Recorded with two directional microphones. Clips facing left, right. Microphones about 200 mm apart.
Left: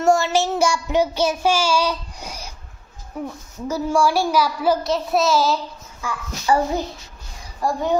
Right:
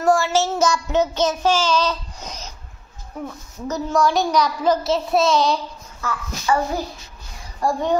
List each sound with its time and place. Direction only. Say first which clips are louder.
0.0 s child singing: even; 20° left (ahead or behind)
3.3 s a child's voice: even; 10° left (ahead or behind)
6.4 s speech: left 2 dB; 25° left (ahead or behind)
7.6 s a child's voice: even; 5° left (ahead or behind)